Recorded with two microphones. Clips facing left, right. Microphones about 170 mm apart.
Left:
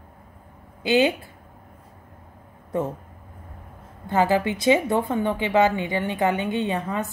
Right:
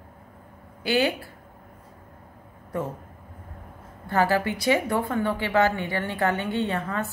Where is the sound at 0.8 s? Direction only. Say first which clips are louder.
Left 4 dB; 20° left (ahead or behind).